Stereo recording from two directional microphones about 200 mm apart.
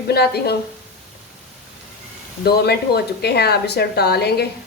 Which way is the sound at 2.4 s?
55° left (ahead or behind).